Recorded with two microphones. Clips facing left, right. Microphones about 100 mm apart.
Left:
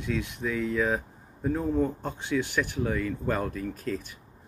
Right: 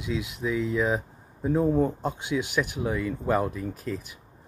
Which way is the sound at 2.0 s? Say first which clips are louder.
Right 1 dB; 15° right (ahead or behind).